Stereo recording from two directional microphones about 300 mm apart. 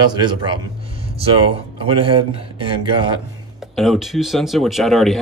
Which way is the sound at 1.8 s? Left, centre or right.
Centre.